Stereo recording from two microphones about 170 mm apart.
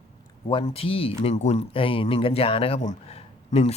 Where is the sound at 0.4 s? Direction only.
35° left (ahead or behind).